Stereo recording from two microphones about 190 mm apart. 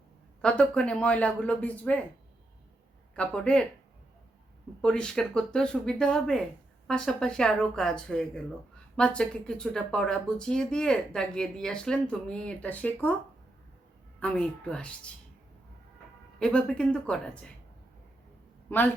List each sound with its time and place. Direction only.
0.4 s speech: 5° left (ahead or behind)
3.2 s speech: 5° left (ahead or behind)
4.8 s speech: 5° left (ahead or behind)
14.2 s speech: 5° left (ahead or behind)
16.4 s speech: 5° left (ahead or behind)
18.7 s speech: 10° left (ahead or behind)